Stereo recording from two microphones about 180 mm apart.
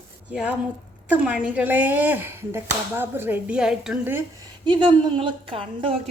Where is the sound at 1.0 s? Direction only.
10° right (ahead or behind).